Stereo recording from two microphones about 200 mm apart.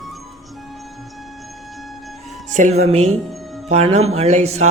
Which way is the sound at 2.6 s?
35° right (ahead or behind).